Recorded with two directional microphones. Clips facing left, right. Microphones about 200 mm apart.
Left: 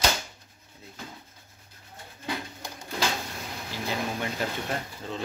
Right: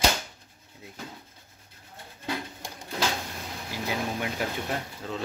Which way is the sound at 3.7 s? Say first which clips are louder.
Right 1 dB; 10° right (ahead or behind).